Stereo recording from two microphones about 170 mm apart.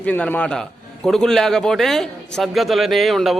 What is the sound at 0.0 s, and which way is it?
A man's voice, 10° left (ahead or behind).